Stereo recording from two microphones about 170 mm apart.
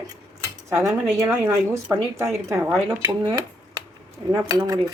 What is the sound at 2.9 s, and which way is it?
Dishes, 20° right (ahead or behind).